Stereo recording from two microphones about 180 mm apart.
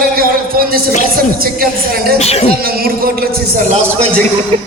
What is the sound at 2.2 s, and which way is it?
Speech, 35° left (ahead or behind).